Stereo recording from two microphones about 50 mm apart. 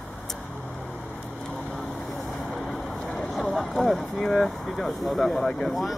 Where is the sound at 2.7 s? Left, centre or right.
Centre.